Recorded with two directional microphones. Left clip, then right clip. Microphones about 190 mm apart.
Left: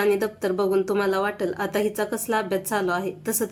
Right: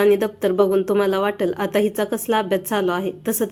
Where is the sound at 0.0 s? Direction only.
20° right (ahead or behind).